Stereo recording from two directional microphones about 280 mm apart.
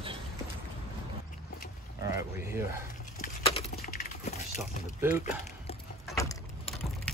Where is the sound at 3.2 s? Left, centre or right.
Left.